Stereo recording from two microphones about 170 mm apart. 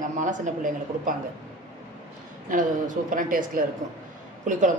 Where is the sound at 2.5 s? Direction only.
50° right (ahead or behind).